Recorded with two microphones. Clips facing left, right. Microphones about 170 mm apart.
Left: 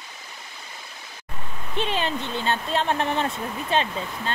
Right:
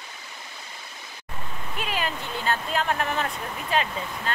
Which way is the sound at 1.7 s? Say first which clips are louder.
Left 4 dB; 30° left (ahead or behind).